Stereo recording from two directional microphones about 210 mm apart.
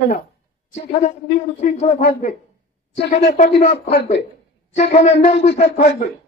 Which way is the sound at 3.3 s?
30° left (ahead or behind).